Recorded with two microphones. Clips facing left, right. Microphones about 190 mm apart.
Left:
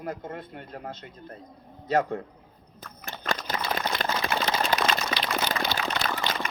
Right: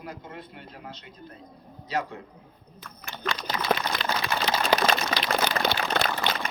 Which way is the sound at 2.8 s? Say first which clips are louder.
Right 2 dB; 50° left (ahead or behind).